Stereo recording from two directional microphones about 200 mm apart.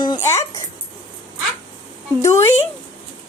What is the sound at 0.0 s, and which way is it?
Dog, 15° left (ahead or behind).